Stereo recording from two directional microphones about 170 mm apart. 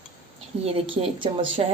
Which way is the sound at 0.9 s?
30° right (ahead or behind).